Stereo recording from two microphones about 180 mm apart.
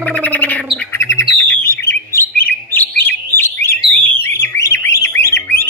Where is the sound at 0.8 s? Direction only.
15° left (ahead or behind).